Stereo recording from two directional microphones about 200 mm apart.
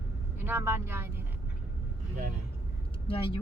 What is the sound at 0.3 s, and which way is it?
Speech, 10° right (ahead or behind).